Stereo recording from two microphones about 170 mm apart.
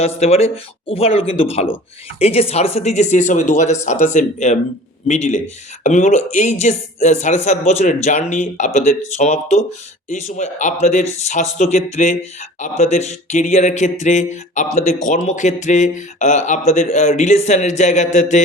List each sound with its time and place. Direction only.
0.2 s speech: 40° left (ahead or behind)